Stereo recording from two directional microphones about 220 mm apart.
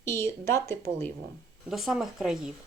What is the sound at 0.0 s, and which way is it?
Speech, 10° left (ahead or behind).